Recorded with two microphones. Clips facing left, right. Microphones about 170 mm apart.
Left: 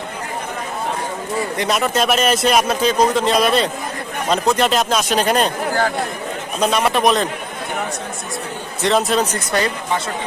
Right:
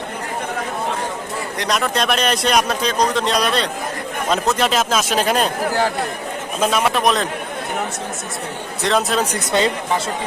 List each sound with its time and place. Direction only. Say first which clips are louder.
1.5 s a man's voice: left 1 dB; 5° left (ahead or behind)
8.8 s a man's voice: left 2 dB; centre (ahead or behind)
9.3 s speech: right 1 dB; 20° right (ahead or behind)